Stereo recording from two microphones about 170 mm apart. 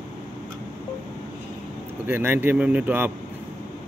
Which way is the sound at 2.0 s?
10° right (ahead or behind).